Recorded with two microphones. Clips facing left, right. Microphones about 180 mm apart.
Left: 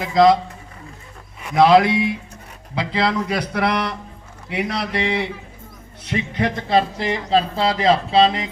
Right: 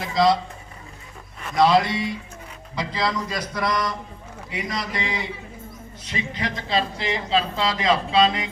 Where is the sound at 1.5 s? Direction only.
60° left (ahead or behind).